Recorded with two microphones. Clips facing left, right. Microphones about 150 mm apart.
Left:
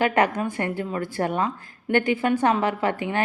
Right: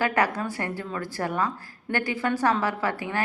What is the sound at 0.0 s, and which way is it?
A woman's voice, 20° left (ahead or behind).